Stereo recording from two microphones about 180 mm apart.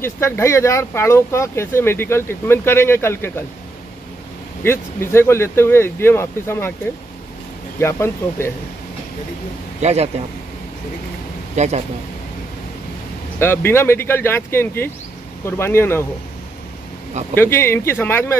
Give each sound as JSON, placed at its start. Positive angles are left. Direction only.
{"t": 0.0, "sound": "speech", "side_deg": 15}
{"t": 4.6, "sound": "speech", "side_deg": 15}
{"t": 7.8, "sound": "speech", "side_deg": 15}
{"t": 9.8, "sound": "a man's voice", "side_deg": -35}
{"t": 11.5, "sound": "speech", "side_deg": -40}
{"t": 13.4, "sound": "speech", "side_deg": 10}
{"t": 17.3, "sound": "speech", "side_deg": 10}